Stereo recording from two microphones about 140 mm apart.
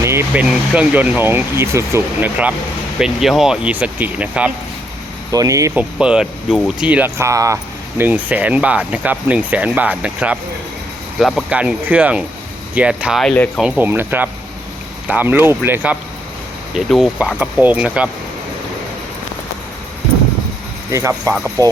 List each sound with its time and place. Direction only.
0.0 s speech: 20° right (ahead or behind)
3.0 s speech: centre (ahead or behind)
5.3 s speech: 25° right (ahead or behind)
5.7 s speech: 5° right (ahead or behind)
13.2 s speech: 10° left (ahead or behind)
13.6 s speech: 10° right (ahead or behind)
16.7 s speech: centre (ahead or behind)
20.9 s speech: 20° right (ahead or behind)